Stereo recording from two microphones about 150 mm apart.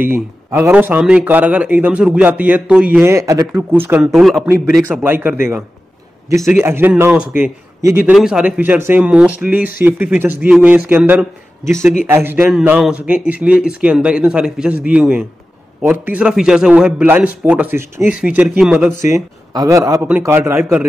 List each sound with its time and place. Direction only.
0.0 s a man's voice: 15° right (ahead or behind)
5.0 s a man's voice: 15° right (ahead or behind)
8.1 s a man's voice: 5° right (ahead or behind)
12.1 s a man's voice: 15° right (ahead or behind)
19.0 s a man's voice: 20° right (ahead or behind)